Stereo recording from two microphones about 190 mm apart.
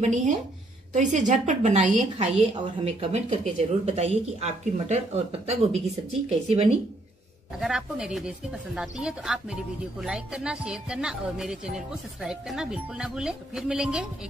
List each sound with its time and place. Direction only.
0.0 s speech: 40° right (ahead or behind)
7.5 s a woman's voice: 5° right (ahead or behind)